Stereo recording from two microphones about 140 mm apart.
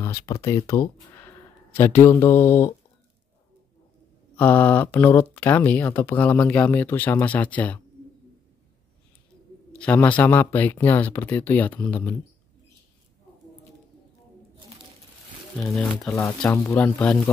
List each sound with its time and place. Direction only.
0.0 s speech: 20° left (ahead or behind)
4.4 s speech: 15° left (ahead or behind)
9.8 s speech: 10° left (ahead or behind)
15.6 s speech: 5° left (ahead or behind)
16.1 s speech: 20° left (ahead or behind)
16.8 s speech: 10° left (ahead or behind)